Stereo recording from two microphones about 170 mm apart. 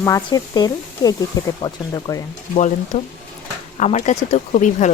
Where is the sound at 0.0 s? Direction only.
20° left (ahead or behind).